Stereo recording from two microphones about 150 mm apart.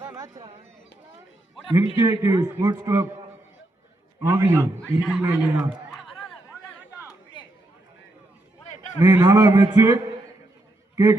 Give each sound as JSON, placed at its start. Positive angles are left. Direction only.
{"t": 0.0, "sound": "a sound", "side_deg": -20}
{"t": 0.4, "sound": "speech", "side_deg": -45}
{"t": 2.0, "sound": "a man's voice", "side_deg": -25}
{"t": 4.2, "sound": "a man's voice", "side_deg": -20}
{"t": 4.9, "sound": "a man's voice", "side_deg": -5}
{"t": 9.0, "sound": "a man's voice", "side_deg": -20}